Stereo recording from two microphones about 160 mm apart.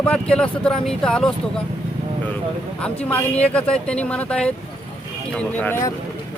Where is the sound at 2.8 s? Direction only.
10° left (ahead or behind).